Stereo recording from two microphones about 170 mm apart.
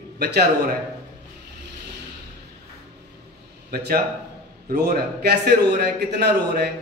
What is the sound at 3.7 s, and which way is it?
A man's voice, 65° right (ahead or behind).